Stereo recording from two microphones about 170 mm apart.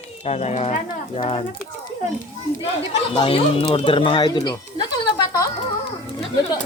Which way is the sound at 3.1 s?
30° left (ahead or behind).